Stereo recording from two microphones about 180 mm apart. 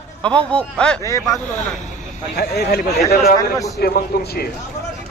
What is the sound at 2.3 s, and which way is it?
A man's voice, 65° left (ahead or behind).